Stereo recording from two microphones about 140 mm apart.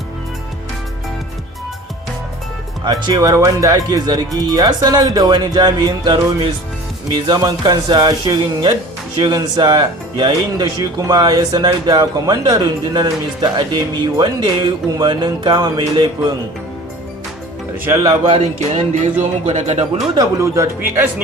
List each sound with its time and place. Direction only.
2.8 s speech: 25° right (ahead or behind)
17.8 s speech: 20° right (ahead or behind)
18.3 s speech: 50° right (ahead or behind)
20.1 s speech: 20° right (ahead or behind)